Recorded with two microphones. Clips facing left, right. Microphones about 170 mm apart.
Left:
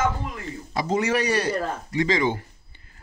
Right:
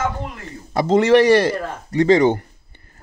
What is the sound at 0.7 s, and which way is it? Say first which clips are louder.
Speech: right 10 dB; 75° right (ahead or behind).